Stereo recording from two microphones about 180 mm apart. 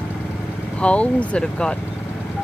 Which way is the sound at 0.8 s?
5° left (ahead or behind).